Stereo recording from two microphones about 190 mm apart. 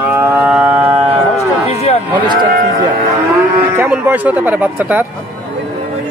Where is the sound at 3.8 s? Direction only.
10° right (ahead or behind).